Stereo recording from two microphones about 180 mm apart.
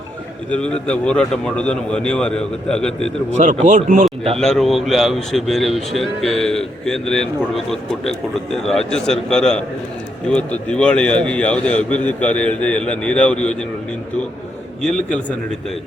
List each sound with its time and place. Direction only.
0.5 s speech: 5° left (ahead or behind)
3.3 s speech: 40° right (ahead or behind)
4.4 s a man's voice: centre (ahead or behind)
14.8 s speech: 5° left (ahead or behind)